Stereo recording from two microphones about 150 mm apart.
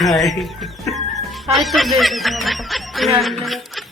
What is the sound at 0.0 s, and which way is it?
Speech, centre (ahead or behind).